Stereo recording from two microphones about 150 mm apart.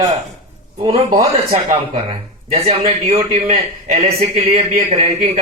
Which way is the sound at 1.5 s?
40° right (ahead or behind).